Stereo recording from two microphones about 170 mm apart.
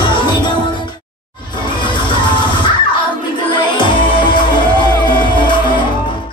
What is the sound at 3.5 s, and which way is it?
Music, 25° left (ahead or behind).